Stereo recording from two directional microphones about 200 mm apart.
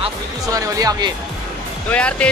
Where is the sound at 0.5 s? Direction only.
15° right (ahead or behind).